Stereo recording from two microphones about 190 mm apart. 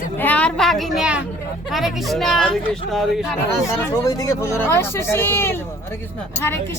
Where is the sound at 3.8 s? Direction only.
20° left (ahead or behind).